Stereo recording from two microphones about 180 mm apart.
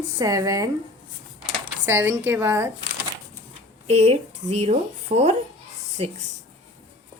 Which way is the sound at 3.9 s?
35° right (ahead or behind).